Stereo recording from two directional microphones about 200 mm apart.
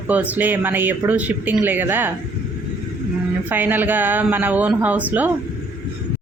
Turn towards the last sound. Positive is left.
turn(degrees=-10)  # may be behind; listen again after turning